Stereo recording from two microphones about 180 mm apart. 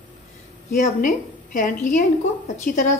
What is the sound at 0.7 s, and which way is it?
A woman's voice, 45° left (ahead or behind).